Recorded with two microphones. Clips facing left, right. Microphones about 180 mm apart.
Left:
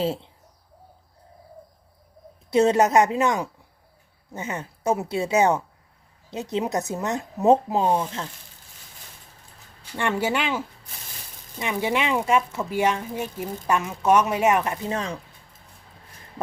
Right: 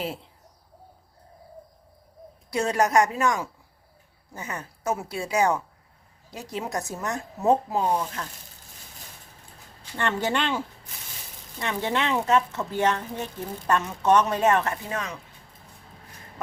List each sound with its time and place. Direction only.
0.0 s speech: 30° left (ahead or behind)
2.5 s speech: 25° left (ahead or behind)
10.0 s speech: 10° left (ahead or behind)
11.6 s speech: 10° left (ahead or behind)
14.8 s speech: 30° left (ahead or behind)